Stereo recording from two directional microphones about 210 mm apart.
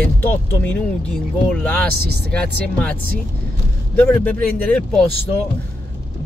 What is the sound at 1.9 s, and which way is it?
Speech, 50° right (ahead or behind).